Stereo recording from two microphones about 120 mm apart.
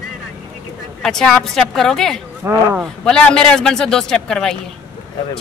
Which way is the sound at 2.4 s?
20° right (ahead or behind).